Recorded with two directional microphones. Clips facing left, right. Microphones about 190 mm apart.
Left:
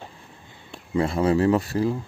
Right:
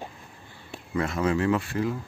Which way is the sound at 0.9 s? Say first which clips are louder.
Left 4 dB; 30° left (ahead or behind).